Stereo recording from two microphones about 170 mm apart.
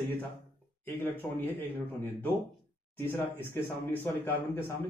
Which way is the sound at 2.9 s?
15° left (ahead or behind).